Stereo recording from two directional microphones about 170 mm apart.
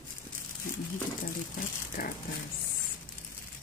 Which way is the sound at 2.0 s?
60° left (ahead or behind).